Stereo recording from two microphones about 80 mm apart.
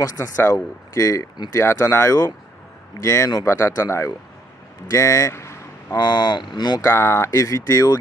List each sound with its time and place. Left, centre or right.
0.0 s speech: left
4.9 s vehicle: left
5.9 s speech: left
6.8 s speech: left